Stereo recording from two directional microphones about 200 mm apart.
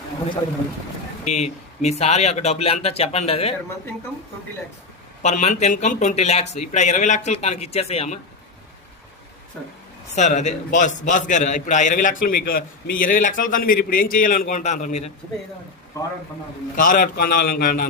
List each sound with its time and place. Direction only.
1.2 s a man's voice: 35° left (ahead or behind)
5.2 s a man's voice: 35° left (ahead or behind)
10.2 s a man's voice: 35° left (ahead or behind)
16.7 s a man's voice: 40° left (ahead or behind)